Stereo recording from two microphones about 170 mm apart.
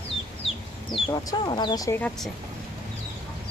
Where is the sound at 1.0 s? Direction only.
25° left (ahead or behind).